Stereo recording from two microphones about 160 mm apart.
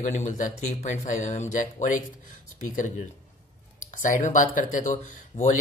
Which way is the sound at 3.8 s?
50° left (ahead or behind).